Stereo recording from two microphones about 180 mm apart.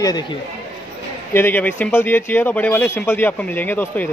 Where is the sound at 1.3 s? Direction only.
10° left (ahead or behind).